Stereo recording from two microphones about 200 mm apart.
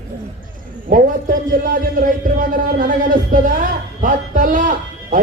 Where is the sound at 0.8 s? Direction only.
45° right (ahead or behind).